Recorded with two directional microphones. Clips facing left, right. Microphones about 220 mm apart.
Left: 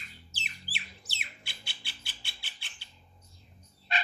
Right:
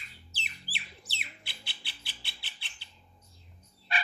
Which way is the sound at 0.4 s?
45° left (ahead or behind).